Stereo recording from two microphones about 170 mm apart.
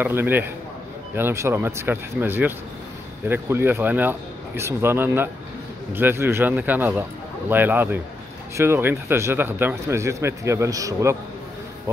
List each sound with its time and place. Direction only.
0.0 s speech: 10° right (ahead or behind)